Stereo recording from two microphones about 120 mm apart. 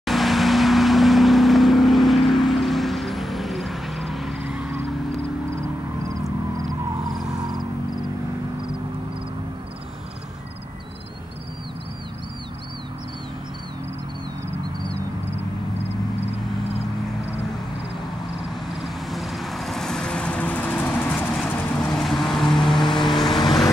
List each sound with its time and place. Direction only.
0.0 s vehicle: centre (ahead or behind)
7.3 s music: 35° right (ahead or behind)
18.8 s vehicle: centre (ahead or behind)
21.9 s vehicle: centre (ahead or behind)